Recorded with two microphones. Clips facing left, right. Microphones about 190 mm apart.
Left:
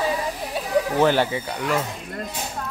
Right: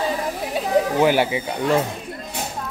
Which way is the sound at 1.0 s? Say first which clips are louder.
Right 1 dB; 15° right (ahead or behind).